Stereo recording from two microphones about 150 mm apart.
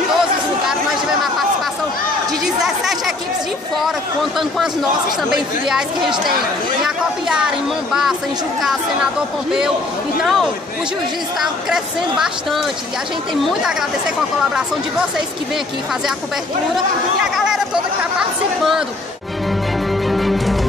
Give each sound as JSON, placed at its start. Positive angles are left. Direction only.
{"t": 2.6, "sound": "chatter", "side_deg": 0}
{"t": 3.7, "sound": "a woman's voice", "side_deg": 0}
{"t": 7.2, "sound": "a woman's voice", "side_deg": -5}
{"t": 10.2, "sound": "a woman's voice", "side_deg": 0}
{"t": 18.6, "sound": "a woman's voice", "side_deg": 0}
{"t": 19.9, "sound": "music", "side_deg": 0}